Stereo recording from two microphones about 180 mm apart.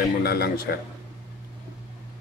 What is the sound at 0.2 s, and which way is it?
Speech, 60° left (ahead or behind).